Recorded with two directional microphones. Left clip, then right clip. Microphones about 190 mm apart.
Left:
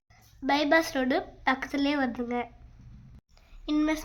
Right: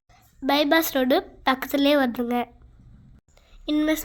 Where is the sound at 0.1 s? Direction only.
25° right (ahead or behind).